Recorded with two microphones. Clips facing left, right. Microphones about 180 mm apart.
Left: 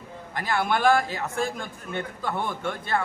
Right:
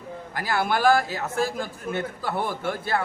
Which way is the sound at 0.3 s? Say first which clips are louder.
Even; 5° right (ahead or behind).